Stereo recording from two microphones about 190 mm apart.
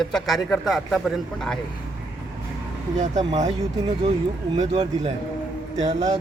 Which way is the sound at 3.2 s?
35° right (ahead or behind).